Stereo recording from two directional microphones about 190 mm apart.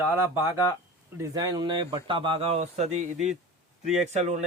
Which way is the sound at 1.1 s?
15° right (ahead or behind).